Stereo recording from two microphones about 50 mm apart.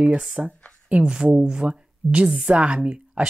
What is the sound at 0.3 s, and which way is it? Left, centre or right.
Speech, right.